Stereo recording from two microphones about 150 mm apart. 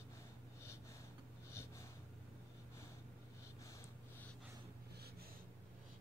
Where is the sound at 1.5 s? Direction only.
15° left (ahead or behind).